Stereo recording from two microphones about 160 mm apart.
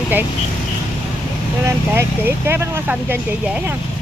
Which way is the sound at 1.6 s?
15° right (ahead or behind).